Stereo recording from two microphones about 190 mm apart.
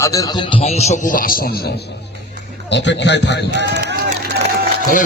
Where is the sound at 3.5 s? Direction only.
65° right (ahead or behind).